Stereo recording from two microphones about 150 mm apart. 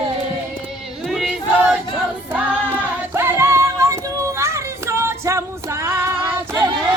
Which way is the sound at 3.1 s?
20° right (ahead or behind).